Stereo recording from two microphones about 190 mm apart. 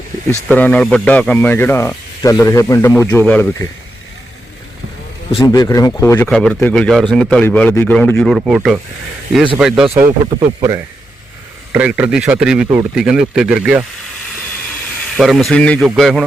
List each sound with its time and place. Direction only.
0.5 s speech: 10° left (ahead or behind)
5.5 s speech: 20° left (ahead or behind); by 9.9 s 5° right (ahead or behind)
9.9 s speech: 15° right (ahead or behind)
11.7 s speech: 5° right (ahead or behind)
15.1 s speech: centre (ahead or behind)